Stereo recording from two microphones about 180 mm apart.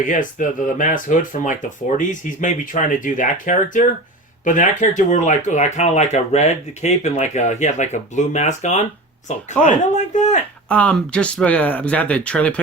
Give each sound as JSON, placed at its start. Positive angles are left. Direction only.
{"t": 0.0, "sound": "speech", "side_deg": 45}
{"t": 10.7, "sound": "speech", "side_deg": 5}